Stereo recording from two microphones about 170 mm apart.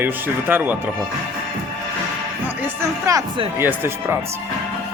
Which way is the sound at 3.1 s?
20° right (ahead or behind).